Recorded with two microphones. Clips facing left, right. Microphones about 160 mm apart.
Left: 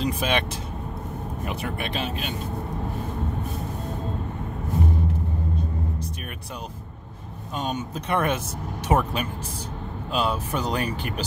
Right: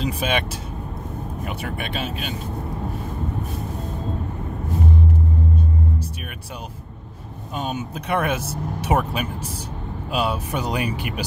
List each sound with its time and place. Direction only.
0.0 s speech: 5° right (ahead or behind)
7.5 s speech: 5° right (ahead or behind)